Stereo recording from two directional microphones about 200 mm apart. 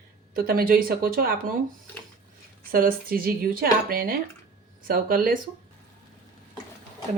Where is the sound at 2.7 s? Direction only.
45° right (ahead or behind).